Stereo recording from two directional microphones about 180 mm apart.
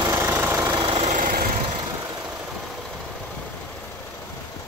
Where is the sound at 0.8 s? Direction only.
30° right (ahead or behind).